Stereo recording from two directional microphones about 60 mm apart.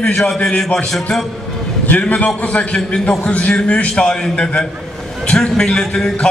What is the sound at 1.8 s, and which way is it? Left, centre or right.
A man's voice, left.